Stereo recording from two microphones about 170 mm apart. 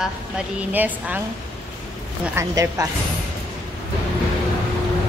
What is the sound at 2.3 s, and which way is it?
Speech, 20° right (ahead or behind).